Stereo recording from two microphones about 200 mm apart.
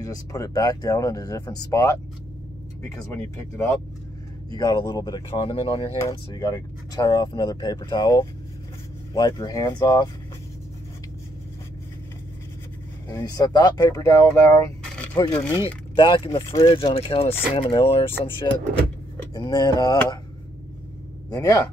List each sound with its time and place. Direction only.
0.0 s speech: 15° left (ahead or behind)
4.6 s speech: 20° left (ahead or behind)
13.1 s speech: 20° left (ahead or behind)
19.3 s speech: 20° left (ahead or behind)
21.3 s speech: 15° left (ahead or behind)